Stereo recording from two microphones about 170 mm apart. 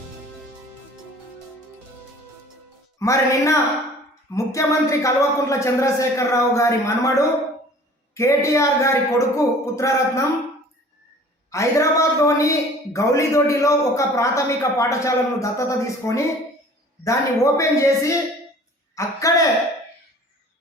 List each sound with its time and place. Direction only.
3.0 s a man's voice: 20° left (ahead or behind)
11.5 s a man's voice: 15° left (ahead or behind)